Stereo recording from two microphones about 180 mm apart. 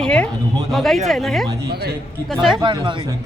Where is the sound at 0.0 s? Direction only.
5° left (ahead or behind).